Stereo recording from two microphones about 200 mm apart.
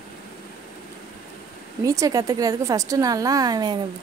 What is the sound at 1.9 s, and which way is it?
A woman's voice, 15° right (ahead or behind).